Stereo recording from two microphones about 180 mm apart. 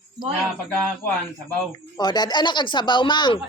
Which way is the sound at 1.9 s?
25° left (ahead or behind).